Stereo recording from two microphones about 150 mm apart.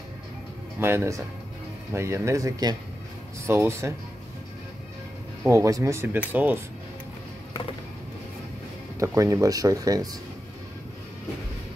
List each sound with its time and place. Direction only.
0.7 s speech: 15° right (ahead or behind)
5.5 s speech: 20° right (ahead or behind)
9.0 s speech: 20° right (ahead or behind)